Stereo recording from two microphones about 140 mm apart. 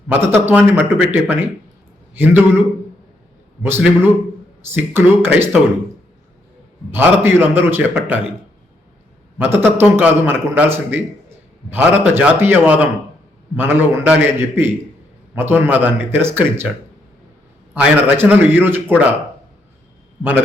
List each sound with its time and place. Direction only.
0.3 s a man's voice: 15° right (ahead or behind)
6.9 s a man's voice: 15° right (ahead or behind)
9.4 s a man's voice: 15° right (ahead or behind)
11.7 s a man's voice: 10° right (ahead or behind)
17.7 s a man's voice: 10° right (ahead or behind)